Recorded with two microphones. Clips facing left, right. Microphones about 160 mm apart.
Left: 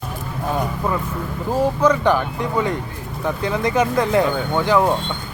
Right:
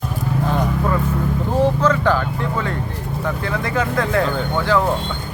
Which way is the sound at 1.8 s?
15° left (ahead or behind).